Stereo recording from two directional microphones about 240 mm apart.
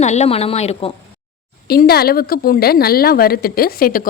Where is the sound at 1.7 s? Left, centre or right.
Left.